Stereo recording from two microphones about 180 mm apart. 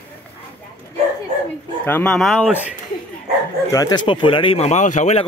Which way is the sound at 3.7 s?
20° left (ahead or behind).